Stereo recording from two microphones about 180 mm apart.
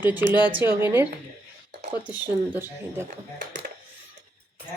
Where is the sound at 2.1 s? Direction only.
10° right (ahead or behind).